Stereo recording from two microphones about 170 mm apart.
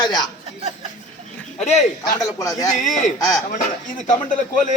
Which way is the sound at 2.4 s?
20° left (ahead or behind).